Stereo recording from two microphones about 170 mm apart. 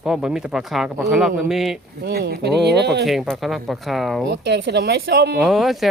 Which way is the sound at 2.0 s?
70° right (ahead or behind).